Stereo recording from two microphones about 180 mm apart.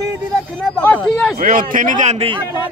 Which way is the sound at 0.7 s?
10° left (ahead or behind).